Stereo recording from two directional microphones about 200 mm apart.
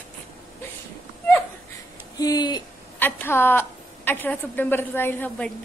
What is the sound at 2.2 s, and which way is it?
A woman's voice, 20° left (ahead or behind).